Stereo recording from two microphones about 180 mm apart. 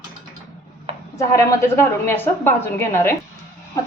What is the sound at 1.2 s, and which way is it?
A woman's voice, 15° left (ahead or behind).